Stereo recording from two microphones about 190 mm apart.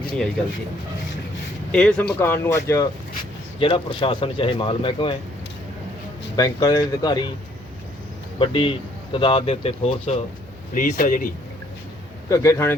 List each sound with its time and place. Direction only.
1.7 s speech: 5° left (ahead or behind)
3.6 s a man's voice: 30° left (ahead or behind)
6.3 s a man's voice: 20° left (ahead or behind)
8.4 s a man's voice: 30° left (ahead or behind)
10.8 s a man's voice: 45° left (ahead or behind)
12.3 s speech: 15° left (ahead or behind)